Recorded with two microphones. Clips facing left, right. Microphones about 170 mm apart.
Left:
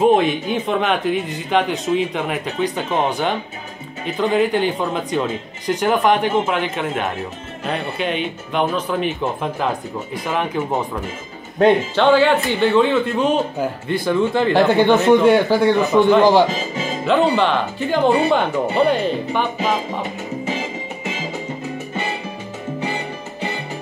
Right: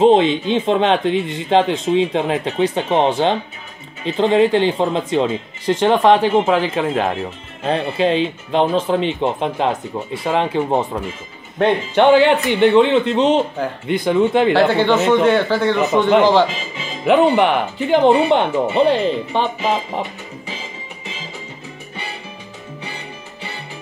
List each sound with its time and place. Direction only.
0.0 s speech: 25° right (ahead or behind)
11.9 s speech: 20° right (ahead or behind)
14.5 s speech: 15° left (ahead or behind)
15.8 s speech: 20° right (ahead or behind)
16.4 s speech: 40° left (ahead or behind)
17.0 s speech: 15° right (ahead or behind)